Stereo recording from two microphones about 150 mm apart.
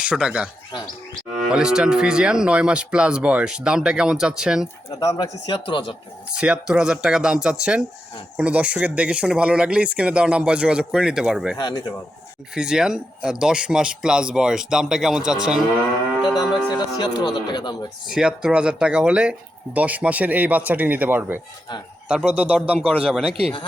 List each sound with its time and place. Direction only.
0.0 s speech: 5° right (ahead or behind)
1.4 s cattle: 5° right (ahead or behind)
4.9 s speech: 25° left (ahead or behind)
6.3 s cattle: 5° right (ahead or behind)
8.4 s speech: 10° right (ahead or behind)
11.5 s speech: 30° left (ahead or behind)
12.5 s cattle: 5° right (ahead or behind)
16.7 s speech: 30° left (ahead or behind)
18.0 s speech: 5° right (ahead or behind)
23.0 s cattle: centre (ahead or behind)